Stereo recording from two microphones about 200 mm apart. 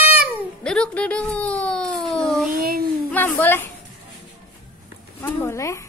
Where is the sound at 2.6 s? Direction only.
45° right (ahead or behind).